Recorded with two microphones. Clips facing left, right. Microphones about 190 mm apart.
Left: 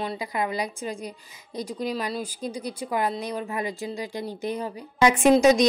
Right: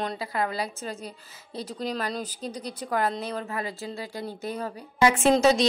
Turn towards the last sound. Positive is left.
turn(degrees=15)  # may be behind; listen again after turning